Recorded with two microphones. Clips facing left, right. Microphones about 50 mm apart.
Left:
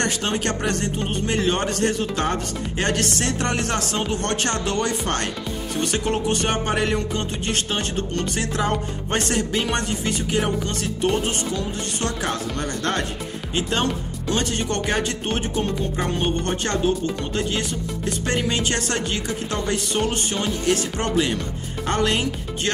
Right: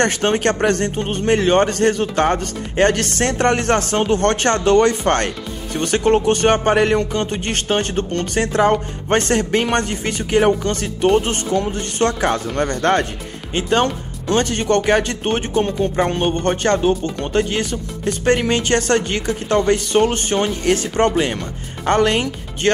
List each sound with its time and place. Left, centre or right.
0.0 s speech: right